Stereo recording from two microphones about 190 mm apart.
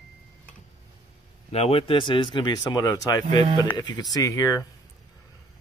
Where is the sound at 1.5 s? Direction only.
30° left (ahead or behind).